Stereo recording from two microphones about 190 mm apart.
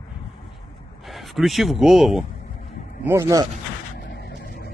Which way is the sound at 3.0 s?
15° right (ahead or behind).